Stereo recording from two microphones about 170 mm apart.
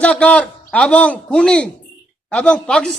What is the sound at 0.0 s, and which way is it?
A man's voice, 5° left (ahead or behind).